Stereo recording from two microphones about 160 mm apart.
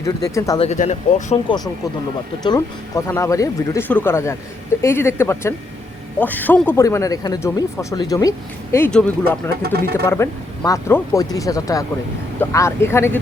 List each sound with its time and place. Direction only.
0.0 s speech: 20° left (ahead or behind)
0.6 s speech: 45° left (ahead or behind)
1.5 s speech: 25° left (ahead or behind)
8.9 s speech: 10° left (ahead or behind)
9.6 s speech: 80° right
10.1 s speech: 20° left (ahead or behind)